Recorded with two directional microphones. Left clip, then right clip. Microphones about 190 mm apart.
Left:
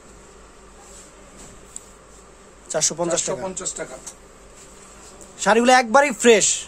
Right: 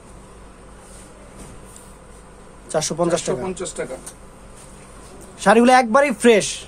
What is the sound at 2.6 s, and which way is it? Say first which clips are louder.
Speech: right 2 dB; centre (ahead or behind).